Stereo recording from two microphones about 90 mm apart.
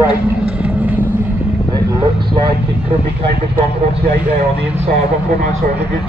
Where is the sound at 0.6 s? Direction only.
20° right (ahead or behind).